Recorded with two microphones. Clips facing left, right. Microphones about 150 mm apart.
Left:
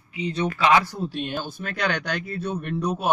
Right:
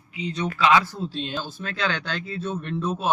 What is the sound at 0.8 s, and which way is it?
Speech, 15° left (ahead or behind).